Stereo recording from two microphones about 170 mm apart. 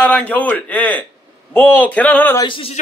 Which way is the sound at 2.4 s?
30° left (ahead or behind).